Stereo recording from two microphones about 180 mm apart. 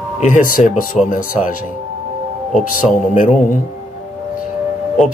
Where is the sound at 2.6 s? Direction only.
50° left (ahead or behind).